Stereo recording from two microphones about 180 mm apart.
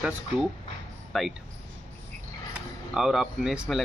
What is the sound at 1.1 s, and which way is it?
Speech, centre (ahead or behind).